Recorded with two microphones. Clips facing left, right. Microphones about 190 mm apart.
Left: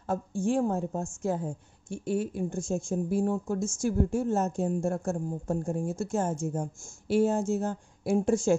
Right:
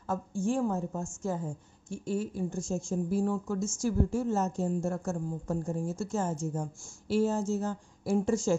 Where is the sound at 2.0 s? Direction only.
60° left (ahead or behind).